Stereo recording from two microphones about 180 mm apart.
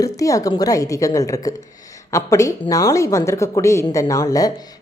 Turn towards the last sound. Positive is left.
turn(degrees=20)  # may be behind; listen again after turning